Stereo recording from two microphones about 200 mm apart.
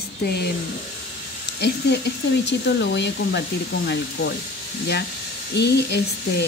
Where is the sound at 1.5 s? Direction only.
55° left (ahead or behind).